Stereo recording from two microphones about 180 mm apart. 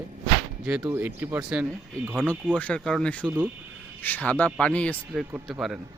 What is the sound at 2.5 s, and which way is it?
A man's voice, 5° left (ahead or behind).